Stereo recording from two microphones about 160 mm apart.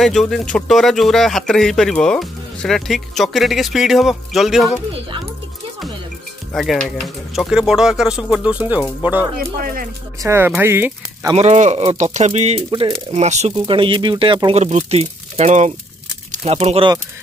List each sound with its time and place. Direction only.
0.0 s speech: centre (ahead or behind)
6.5 s speech: centre (ahead or behind)
9.4 s speech: 65° right (ahead or behind)
10.2 s speech: 15° right (ahead or behind)
11.3 s speech: 45° right (ahead or behind)
13.1 s speech: 45° right (ahead or behind)
13.5 s speech: 30° right (ahead or behind)
14.6 s speech: 45° right (ahead or behind)